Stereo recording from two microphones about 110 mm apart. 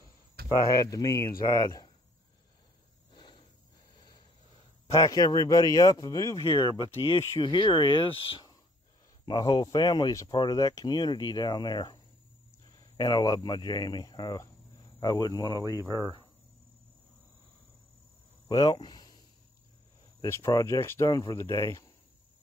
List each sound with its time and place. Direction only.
0.7 s speech: 30° left (ahead or behind)
4.9 s speech: 35° left (ahead or behind)
6.4 s speech: 55° left (ahead or behind)
9.2 s speech: 35° left (ahead or behind)
18.5 s speech: 35° left (ahead or behind)
20.2 s speech: 25° left (ahead or behind)
21.1 s speech: 40° left (ahead or behind)